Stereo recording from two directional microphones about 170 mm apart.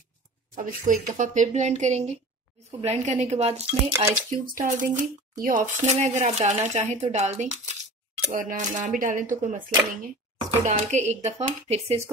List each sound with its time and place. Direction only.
0.6 s speech: 50° right (ahead or behind)
4.0 s speech: 50° right (ahead or behind)
10.6 s speech: 45° right (ahead or behind)